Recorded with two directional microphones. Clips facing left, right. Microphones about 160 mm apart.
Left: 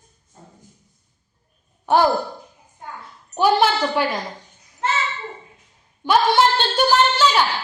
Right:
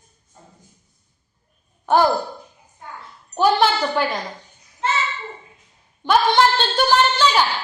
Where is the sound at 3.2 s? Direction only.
10° left (ahead or behind).